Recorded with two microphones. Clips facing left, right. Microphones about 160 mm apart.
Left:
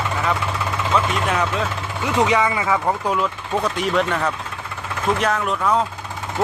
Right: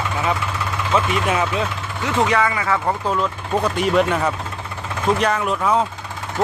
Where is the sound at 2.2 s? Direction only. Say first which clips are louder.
Even; 20° left (ahead or behind).